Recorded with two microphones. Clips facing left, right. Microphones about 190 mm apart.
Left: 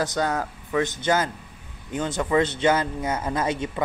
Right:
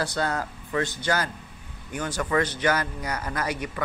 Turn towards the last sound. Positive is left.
turn(degrees=25)  # may be behind; listen again after turning